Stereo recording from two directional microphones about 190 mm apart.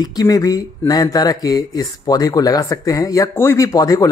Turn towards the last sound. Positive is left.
turn(degrees=20)  # may be behind; listen again after turning